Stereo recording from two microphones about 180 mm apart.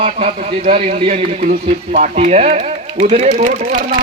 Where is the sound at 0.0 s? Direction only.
35° right (ahead or behind).